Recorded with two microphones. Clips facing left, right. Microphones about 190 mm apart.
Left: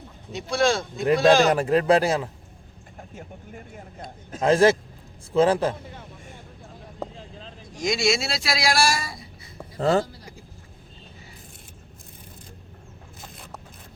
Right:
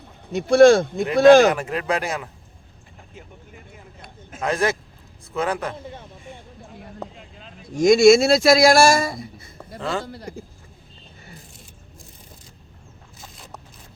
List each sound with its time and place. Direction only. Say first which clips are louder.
0.3 s speech: right 10 dB; 55° right (ahead or behind)
1.5 s speech: left 3 dB; 35° left (ahead or behind)
3.0 s speech: left 4 dB; 45° left (ahead or behind)
4.3 s a man's voice: left 5 dB; 30° left (ahead or behind)
7.2 s vehicle: left 3 dB; 35° left (ahead or behind)
7.8 s speech: right 12 dB; 50° right (ahead or behind)
9.8 s speech: left 6 dB; 40° left (ahead or behind)
10.1 s a sound: right 10 dB; 55° right (ahead or behind)
13.1 s zipper: even; 55° left (ahead or behind)